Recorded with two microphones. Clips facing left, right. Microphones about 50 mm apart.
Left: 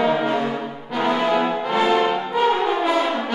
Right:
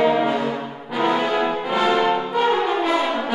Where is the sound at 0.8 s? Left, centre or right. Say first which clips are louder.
Even; centre.